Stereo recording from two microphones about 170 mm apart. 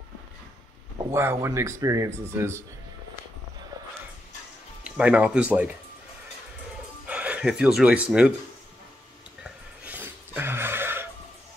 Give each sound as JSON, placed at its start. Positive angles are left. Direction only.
{"t": 1.1, "sound": "speech", "side_deg": -15}
{"t": 4.8, "sound": "speech", "side_deg": -5}
{"t": 7.1, "sound": "speech", "side_deg": -10}
{"t": 9.4, "sound": "a sound", "side_deg": -10}